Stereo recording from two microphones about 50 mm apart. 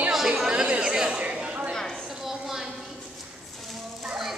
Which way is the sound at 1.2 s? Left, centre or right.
Right.